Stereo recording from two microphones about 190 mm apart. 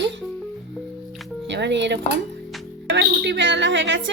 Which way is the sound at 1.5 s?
65° right (ahead or behind).